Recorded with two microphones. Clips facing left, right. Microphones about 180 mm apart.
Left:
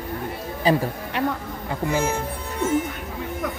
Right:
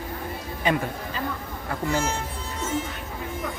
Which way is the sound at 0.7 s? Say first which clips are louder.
Left 4 dB; 35° left (ahead or behind).